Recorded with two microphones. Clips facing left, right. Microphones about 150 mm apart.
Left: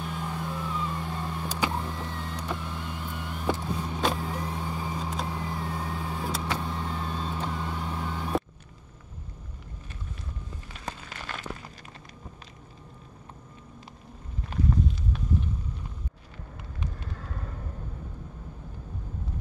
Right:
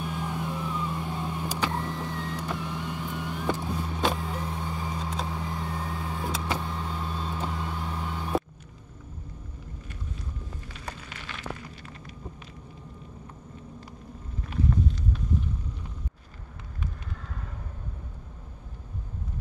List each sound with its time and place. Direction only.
0.0 s vehicle: 5° right (ahead or behind)
4.4 s vehicle: 10° left (ahead or behind)
11.1 s a sound: 45° left (ahead or behind)